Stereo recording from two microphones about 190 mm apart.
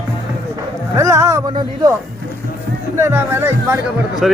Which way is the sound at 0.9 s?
15° right (ahead or behind).